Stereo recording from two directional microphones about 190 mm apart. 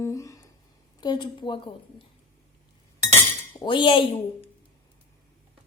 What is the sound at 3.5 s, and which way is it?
Speech, 25° left (ahead or behind).